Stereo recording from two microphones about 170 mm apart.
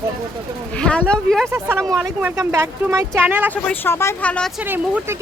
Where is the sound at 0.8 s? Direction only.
5° left (ahead or behind).